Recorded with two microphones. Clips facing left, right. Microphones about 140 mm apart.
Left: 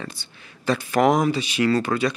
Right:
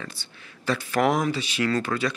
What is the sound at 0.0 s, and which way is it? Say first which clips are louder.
Speech: left 4 dB; 20° left (ahead or behind).